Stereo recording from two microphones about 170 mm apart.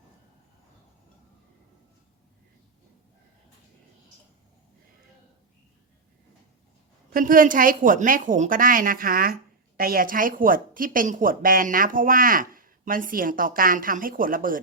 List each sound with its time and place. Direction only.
7.1 s a woman's voice: 55° right (ahead or behind)